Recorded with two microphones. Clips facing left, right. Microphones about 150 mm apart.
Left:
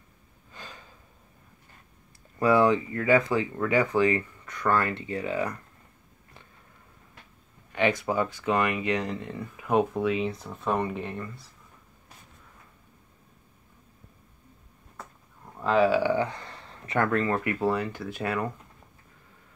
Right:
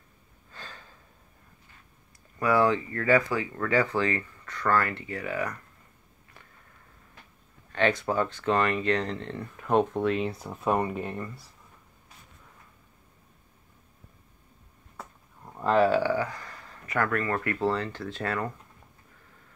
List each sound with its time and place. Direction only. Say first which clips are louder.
0.5 s gasp: left 1 dB; 15° left (ahead or behind)
2.3 s speech: left 2 dB; 25° left (ahead or behind)
7.7 s speech: even; 15° left (ahead or behind); by 11.4 s 5° right (ahead or behind)
15.0 s a sound: right 1 dB; 10° right (ahead or behind)
15.6 s speech: even; centre (ahead or behind)
16.0 s speech: left 2 dB; 20° left (ahead or behind)